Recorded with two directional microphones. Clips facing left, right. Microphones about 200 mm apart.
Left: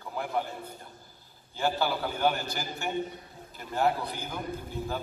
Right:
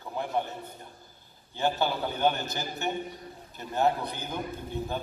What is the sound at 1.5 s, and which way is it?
A man's voice, 20° right (ahead or behind).